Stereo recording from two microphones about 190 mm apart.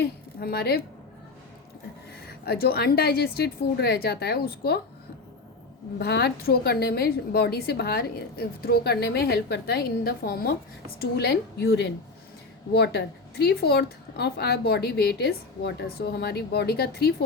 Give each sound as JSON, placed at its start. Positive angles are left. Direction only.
{"t": 0.0, "sound": "a woman's voice", "side_deg": 55}
{"t": 2.5, "sound": "a woman's voice", "side_deg": 55}
{"t": 6.0, "sound": "a woman's voice", "side_deg": 60}